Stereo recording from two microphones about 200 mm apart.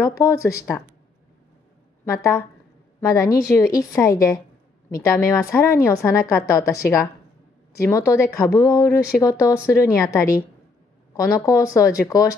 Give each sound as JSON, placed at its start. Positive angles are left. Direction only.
{"t": 0.2, "sound": "speech", "side_deg": 15}
{"t": 3.0, "sound": "speech", "side_deg": 15}